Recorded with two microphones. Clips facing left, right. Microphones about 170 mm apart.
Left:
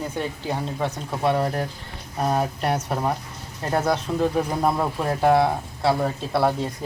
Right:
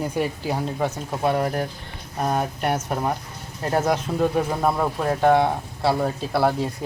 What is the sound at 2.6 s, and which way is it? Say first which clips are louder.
Speech: even; 30° left (ahead or behind).